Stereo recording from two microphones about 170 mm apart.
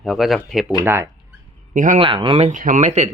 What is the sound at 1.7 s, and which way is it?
Speech, 50° right (ahead or behind).